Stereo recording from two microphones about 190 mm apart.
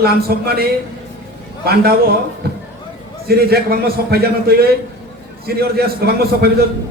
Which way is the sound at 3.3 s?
55° right (ahead or behind).